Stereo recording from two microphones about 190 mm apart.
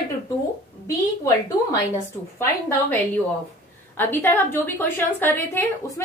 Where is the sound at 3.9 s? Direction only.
10° left (ahead or behind).